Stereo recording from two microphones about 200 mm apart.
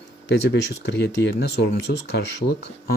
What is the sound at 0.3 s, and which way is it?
Speech, 55° left (ahead or behind).